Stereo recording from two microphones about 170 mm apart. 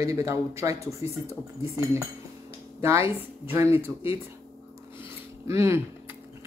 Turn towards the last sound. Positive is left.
turn(degrees=-15)  # may be behind; listen again after turning